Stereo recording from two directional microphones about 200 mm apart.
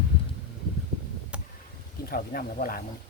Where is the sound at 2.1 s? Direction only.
45° left (ahead or behind).